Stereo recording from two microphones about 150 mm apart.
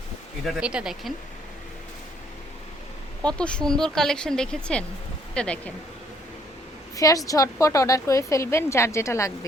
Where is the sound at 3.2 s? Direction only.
5° left (ahead or behind).